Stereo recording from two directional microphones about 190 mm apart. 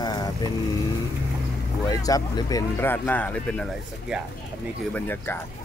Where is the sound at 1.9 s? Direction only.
20° left (ahead or behind); by 4.2 s centre (ahead or behind).